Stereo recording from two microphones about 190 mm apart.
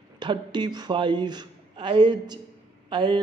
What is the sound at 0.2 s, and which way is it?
Speech, 25° right (ahead or behind).